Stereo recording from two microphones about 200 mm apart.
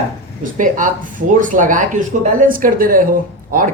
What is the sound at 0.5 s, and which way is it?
Speech, 40° right (ahead or behind).